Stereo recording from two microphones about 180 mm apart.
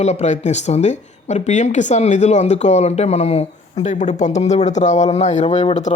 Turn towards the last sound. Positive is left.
turn(degrees=40)  # may be behind; listen again after turning